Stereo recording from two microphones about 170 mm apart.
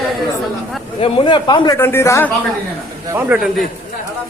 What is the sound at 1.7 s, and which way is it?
Speech, 15° left (ahead or behind).